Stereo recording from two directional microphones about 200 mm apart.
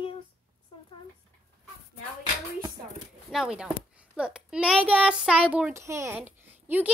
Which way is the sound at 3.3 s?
5° right (ahead or behind).